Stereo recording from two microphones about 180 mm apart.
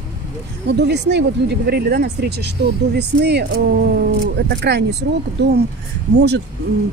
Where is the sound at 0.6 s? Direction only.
70° right (ahead or behind).